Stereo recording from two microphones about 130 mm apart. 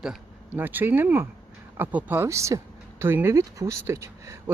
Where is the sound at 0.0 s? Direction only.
5° right (ahead or behind).